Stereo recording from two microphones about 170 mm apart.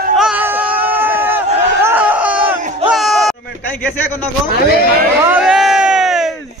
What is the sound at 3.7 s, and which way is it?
Speech, 10° left (ahead or behind).